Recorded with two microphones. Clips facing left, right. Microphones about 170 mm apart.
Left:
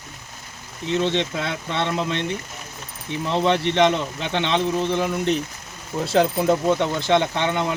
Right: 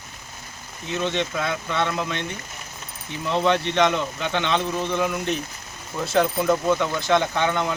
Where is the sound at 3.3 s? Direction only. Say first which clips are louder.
Left 1 dB; 20° left (ahead or behind).